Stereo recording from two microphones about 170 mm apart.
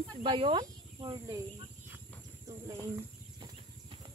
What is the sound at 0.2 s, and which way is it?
Speech, 30° right (ahead or behind).